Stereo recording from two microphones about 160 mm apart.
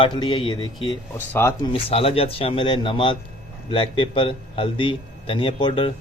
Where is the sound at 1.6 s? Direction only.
35° left (ahead or behind).